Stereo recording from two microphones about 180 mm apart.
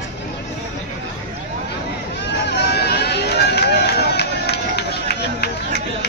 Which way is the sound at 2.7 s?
60° left (ahead or behind).